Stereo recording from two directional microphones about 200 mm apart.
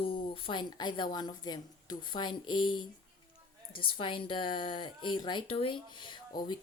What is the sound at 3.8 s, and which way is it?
Speech, 25° left (ahead or behind).